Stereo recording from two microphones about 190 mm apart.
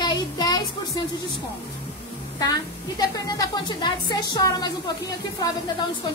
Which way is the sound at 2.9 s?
20° left (ahead or behind).